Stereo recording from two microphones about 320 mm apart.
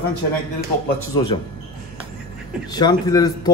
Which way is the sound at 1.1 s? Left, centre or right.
Centre.